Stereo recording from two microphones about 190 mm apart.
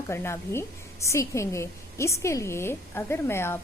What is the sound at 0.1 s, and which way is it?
A woman's voice, 15° left (ahead or behind).